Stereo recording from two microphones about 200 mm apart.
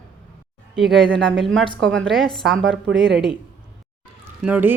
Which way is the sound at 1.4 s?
Centre (ahead or behind).